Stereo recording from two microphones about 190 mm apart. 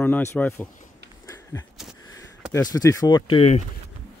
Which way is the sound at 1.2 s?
15° left (ahead or behind).